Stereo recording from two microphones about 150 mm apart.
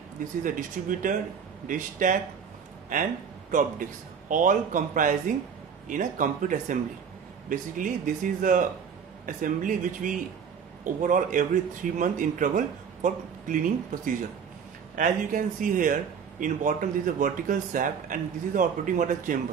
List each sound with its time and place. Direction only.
0.4 s speech: 60° right (ahead or behind)
3.5 s speech: 60° right (ahead or behind)